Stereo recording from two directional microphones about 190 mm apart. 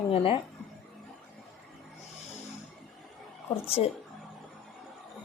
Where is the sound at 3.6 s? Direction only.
30° left (ahead or behind).